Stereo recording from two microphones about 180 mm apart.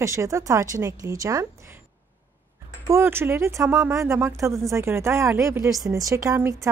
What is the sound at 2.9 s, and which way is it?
Speech, 15° right (ahead or behind).